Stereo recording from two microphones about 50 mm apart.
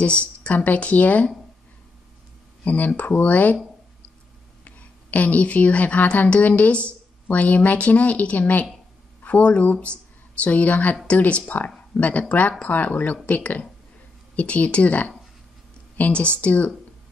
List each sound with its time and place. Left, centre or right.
0.0 s speech: left
2.6 s speech: left
4.6 s a woman's voice: left